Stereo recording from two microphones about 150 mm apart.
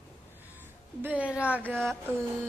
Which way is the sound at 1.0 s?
10° right (ahead or behind).